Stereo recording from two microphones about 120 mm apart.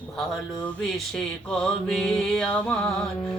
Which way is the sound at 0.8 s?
5° left (ahead or behind).